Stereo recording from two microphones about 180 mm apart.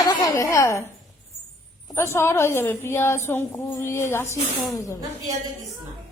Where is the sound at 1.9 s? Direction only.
15° left (ahead or behind).